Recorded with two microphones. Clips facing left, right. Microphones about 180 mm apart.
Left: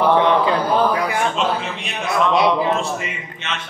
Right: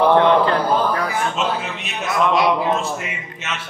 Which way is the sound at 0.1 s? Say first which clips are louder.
Right 1 dB; 15° left (ahead or behind).